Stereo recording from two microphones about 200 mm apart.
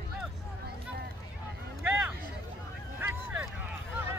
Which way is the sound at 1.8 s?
10° right (ahead or behind).